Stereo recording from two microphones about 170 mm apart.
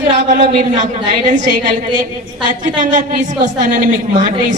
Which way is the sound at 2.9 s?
50° right (ahead or behind).